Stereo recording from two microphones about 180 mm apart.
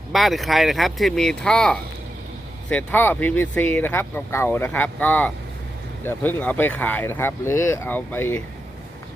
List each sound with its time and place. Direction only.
0.1 s speech: centre (ahead or behind)